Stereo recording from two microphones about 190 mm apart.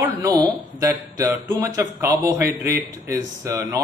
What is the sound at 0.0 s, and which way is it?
Speech, 20° right (ahead or behind).